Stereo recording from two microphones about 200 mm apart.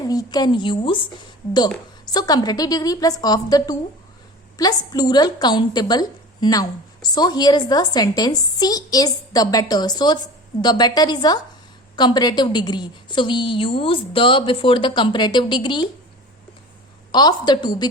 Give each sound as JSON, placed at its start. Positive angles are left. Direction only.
{"t": 0.1, "sound": "a woman's voice", "side_deg": 20}
{"t": 2.0, "sound": "a woman's voice", "side_deg": 20}
{"t": 17.1, "sound": "a woman's voice", "side_deg": 20}